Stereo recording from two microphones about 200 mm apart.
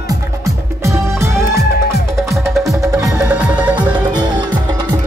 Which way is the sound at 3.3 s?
5° right (ahead or behind).